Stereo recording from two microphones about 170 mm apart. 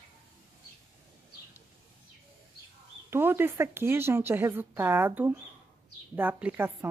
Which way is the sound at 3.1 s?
15° right (ahead or behind).